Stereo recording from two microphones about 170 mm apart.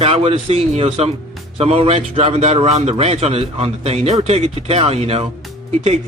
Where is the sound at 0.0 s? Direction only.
35° right (ahead or behind).